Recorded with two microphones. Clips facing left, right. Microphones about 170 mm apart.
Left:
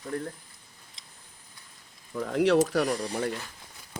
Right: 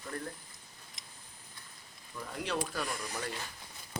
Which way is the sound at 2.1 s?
75° left (ahead or behind).